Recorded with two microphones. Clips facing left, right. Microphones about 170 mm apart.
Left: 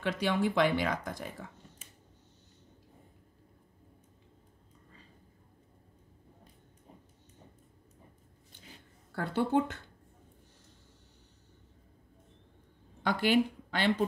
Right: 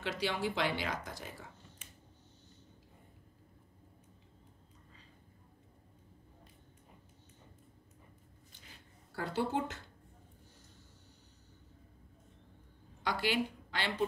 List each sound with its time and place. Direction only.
0.0 s speech: 50° left (ahead or behind)
9.1 s speech: 55° left (ahead or behind)
13.0 s a woman's voice: 50° left (ahead or behind)